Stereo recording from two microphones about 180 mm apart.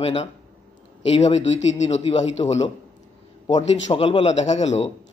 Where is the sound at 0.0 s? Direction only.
35° left (ahead or behind).